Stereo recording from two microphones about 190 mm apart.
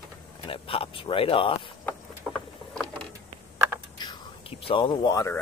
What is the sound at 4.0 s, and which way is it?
Whispering, 25° left (ahead or behind).